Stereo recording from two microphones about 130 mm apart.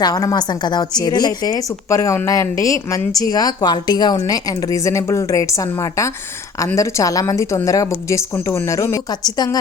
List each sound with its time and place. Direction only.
0.0 s a woman's voice: 30° left (ahead or behind)